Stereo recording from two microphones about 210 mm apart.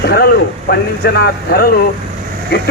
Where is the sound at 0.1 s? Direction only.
45° left (ahead or behind).